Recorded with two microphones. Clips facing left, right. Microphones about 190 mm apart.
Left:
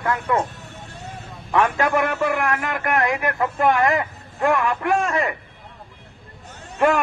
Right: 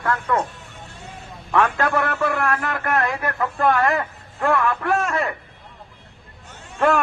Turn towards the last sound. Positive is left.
turn(degrees=15)  # may be behind; listen again after turning